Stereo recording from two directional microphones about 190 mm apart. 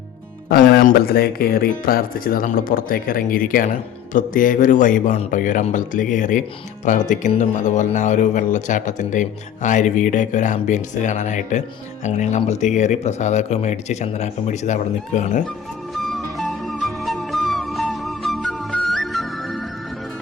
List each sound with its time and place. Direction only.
0.4 s speech: 55° left (ahead or behind)
16.1 s music: centre (ahead or behind)